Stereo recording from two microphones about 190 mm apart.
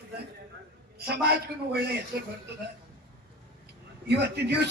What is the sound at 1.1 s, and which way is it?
Speech, 55° right (ahead or behind).